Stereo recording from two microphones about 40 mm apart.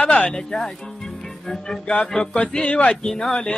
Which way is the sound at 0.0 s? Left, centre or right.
Left.